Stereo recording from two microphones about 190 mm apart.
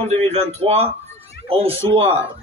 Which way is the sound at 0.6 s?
30° right (ahead or behind).